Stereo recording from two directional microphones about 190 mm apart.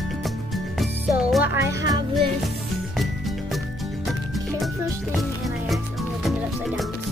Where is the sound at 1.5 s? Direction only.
15° right (ahead or behind).